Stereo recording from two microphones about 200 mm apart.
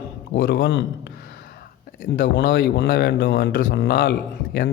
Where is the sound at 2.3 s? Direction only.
45° left (ahead or behind).